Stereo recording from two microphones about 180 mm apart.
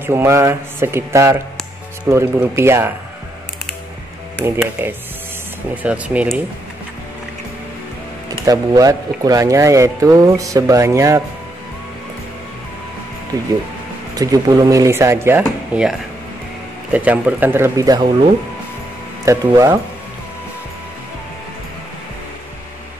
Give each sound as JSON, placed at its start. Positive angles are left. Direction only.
{"t": 0.0, "sound": "speech", "side_deg": -15}
{"t": 4.5, "sound": "speech", "side_deg": -10}
{"t": 8.5, "sound": "speech", "side_deg": -20}
{"t": 13.3, "sound": "speech", "side_deg": -20}
{"t": 16.9, "sound": "speech", "side_deg": -10}